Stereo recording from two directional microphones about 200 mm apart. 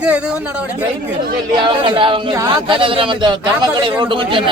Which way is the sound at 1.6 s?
25° right (ahead or behind).